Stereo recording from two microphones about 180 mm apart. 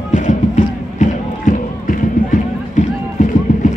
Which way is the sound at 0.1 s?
40° left (ahead or behind).